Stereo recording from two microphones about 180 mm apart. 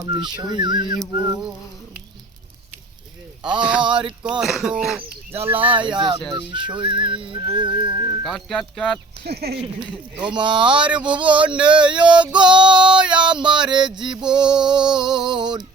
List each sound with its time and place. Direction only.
0.0 s female singing: 25° right (ahead or behind)
3.6 s speech: 5° right (ahead or behind)
5.3 s female singing: 30° right (ahead or behind)
8.2 s speech: centre (ahead or behind)
9.2 s speech: 60° right (ahead or behind)
9.9 s speech: 5° right (ahead or behind)
10.3 s female singing: 25° right (ahead or behind)